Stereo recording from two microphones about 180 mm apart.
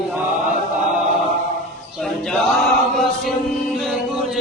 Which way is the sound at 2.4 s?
Centre (ahead or behind).